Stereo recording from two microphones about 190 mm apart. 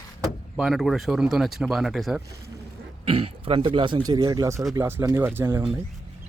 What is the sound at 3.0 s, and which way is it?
Speech, 30° right (ahead or behind).